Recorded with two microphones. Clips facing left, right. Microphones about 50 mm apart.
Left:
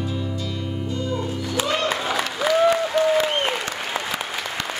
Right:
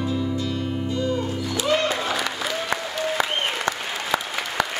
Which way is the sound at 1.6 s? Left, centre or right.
Left.